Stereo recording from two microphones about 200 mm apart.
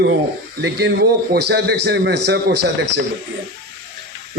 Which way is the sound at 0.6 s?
55° right (ahead or behind).